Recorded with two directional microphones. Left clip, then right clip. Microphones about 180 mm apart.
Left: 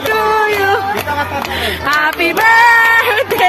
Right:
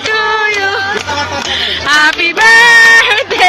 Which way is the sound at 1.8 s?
10° left (ahead or behind).